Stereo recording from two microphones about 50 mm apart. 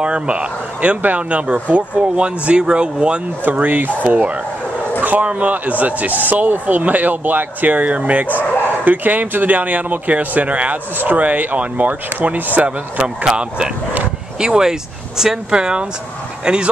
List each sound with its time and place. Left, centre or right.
0.0 s speech: right
3.4 s speech: right
12.6 s speech: centre